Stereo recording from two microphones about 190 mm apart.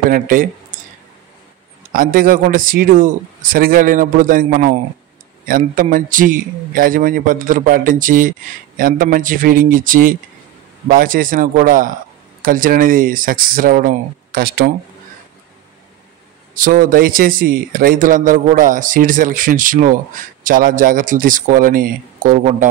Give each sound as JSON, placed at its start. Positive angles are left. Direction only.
{"t": 0.1, "sound": "speech", "side_deg": -45}
{"t": 1.9, "sound": "a man's voice", "side_deg": -45}
{"t": 16.5, "sound": "a man's voice", "side_deg": -45}